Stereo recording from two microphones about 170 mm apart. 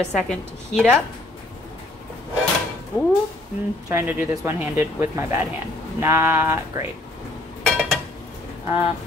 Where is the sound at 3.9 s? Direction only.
15° right (ahead or behind).